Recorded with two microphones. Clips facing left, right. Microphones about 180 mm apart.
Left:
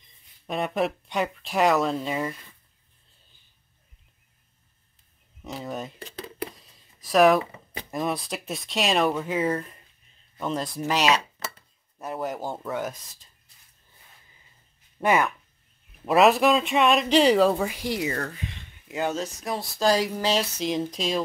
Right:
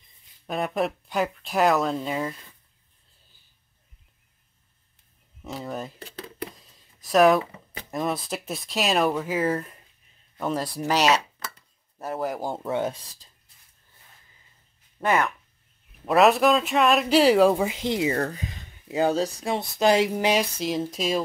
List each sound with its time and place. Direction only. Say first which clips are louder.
0.5 s speech: even; centre (ahead or behind)
5.4 s speech: even; centre (ahead or behind)
6.1 s a sound: left 2 dB; 5° left (ahead or behind)
7.0 s speech: even; centre (ahead or behind)
12.0 s speech: right 2 dB; centre (ahead or behind)
12.4 s speech: right 3 dB; 20° right (ahead or behind)
15.0 s speech: left 1 dB; centre (ahead or behind)
17.6 s speech: right 3 dB; 20° right (ahead or behind)